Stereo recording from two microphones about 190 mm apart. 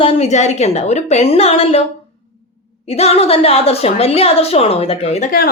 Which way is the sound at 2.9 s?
30° left (ahead or behind).